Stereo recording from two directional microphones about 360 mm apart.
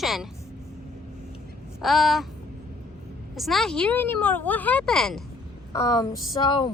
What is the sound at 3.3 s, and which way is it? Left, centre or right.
A woman's voice, centre.